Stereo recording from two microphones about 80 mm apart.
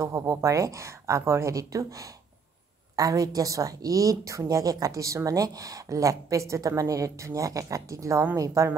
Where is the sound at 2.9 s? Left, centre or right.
Right.